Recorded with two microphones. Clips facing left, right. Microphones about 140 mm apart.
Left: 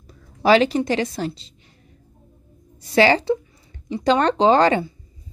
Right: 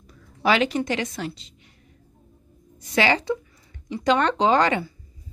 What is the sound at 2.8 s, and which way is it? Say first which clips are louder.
A woman's voice: left 5 dB; 35° left (ahead or behind).